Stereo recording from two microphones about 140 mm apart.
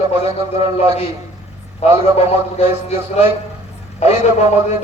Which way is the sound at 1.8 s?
50° left (ahead or behind).